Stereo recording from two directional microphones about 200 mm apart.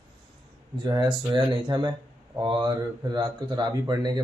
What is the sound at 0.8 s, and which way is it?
Speech, 20° right (ahead or behind).